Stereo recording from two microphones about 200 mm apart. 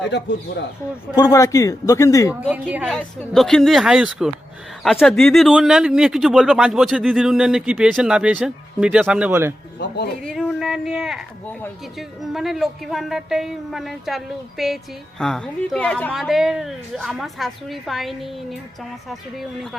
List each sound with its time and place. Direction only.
1.1 s speech: 20° left (ahead or behind)
2.3 s a woman's voice: 10° right (ahead or behind)
9.7 s speech: 55° left (ahead or behind)
10.2 s speech: centre (ahead or behind)